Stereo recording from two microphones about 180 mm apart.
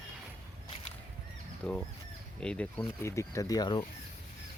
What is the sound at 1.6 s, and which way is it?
Speech, 5° left (ahead or behind).